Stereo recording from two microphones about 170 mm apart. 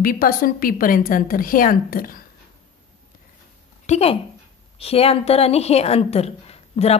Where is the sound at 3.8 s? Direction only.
40° left (ahead or behind).